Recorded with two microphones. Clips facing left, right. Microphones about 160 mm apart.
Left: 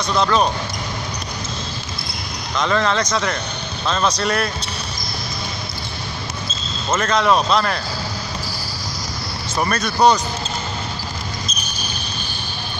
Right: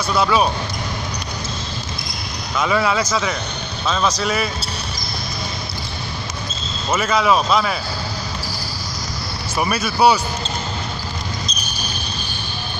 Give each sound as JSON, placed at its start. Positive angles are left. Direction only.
{"t": 0.1, "sound": "speech", "side_deg": -5}
{"t": 2.5, "sound": "speech", "side_deg": -5}
{"t": 6.9, "sound": "speech", "side_deg": -5}
{"t": 9.6, "sound": "speech", "side_deg": -10}